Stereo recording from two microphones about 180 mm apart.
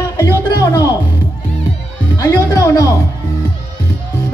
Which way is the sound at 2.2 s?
20° left (ahead or behind).